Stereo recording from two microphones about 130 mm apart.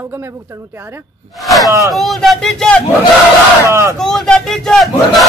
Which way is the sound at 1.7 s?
25° right (ahead or behind).